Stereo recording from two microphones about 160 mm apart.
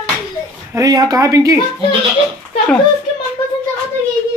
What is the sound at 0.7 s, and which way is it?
Speech, 25° right (ahead or behind).